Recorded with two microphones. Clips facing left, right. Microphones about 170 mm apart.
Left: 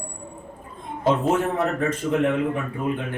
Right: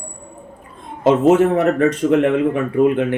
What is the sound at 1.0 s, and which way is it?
Speech, 75° right (ahead or behind).